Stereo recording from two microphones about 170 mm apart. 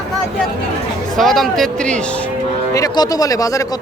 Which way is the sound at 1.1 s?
Centre (ahead or behind).